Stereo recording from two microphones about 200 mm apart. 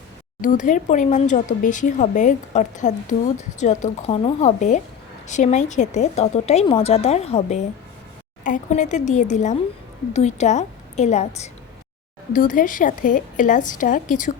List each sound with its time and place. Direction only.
0.4 s speech: 40° left (ahead or behind)
12.3 s speech: 40° left (ahead or behind)